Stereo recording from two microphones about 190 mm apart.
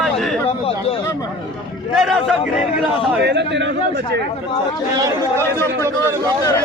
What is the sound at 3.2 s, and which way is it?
Speech, 65° right (ahead or behind).